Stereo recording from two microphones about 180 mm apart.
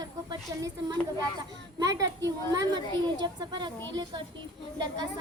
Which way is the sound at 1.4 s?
20° right (ahead or behind).